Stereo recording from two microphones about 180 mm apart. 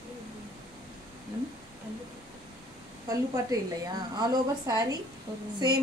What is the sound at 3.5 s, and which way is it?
A woman's voice, 20° right (ahead or behind).